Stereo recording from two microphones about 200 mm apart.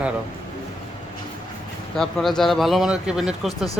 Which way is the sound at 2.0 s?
5° left (ahead or behind).